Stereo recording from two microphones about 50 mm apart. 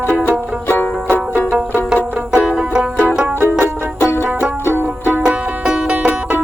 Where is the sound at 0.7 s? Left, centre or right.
Left.